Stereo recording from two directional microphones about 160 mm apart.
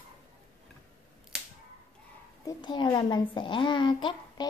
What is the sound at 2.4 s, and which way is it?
A child's voice, 25° left (ahead or behind).